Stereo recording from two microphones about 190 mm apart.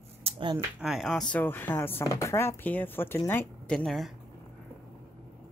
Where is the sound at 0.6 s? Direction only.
5° right (ahead or behind).